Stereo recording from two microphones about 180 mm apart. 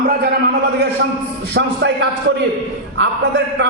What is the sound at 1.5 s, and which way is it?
Speech, 75° right (ahead or behind).